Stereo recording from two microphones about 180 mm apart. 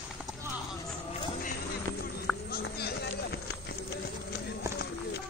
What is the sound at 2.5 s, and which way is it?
Run, 65° left (ahead or behind).